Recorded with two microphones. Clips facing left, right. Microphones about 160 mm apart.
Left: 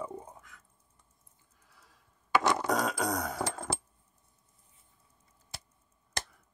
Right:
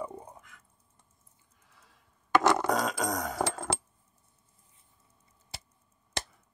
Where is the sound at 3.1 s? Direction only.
10° right (ahead or behind).